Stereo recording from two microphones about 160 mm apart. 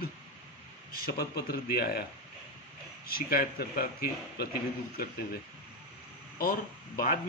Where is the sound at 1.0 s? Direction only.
70° left (ahead or behind).